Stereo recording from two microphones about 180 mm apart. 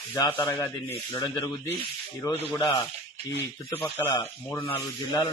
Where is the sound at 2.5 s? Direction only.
15° left (ahead or behind).